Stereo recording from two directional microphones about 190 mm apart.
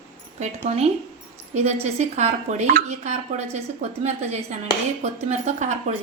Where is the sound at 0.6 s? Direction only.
35° right (ahead or behind).